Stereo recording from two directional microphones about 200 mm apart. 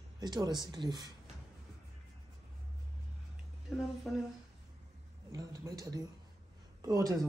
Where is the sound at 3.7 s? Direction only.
Centre (ahead or behind).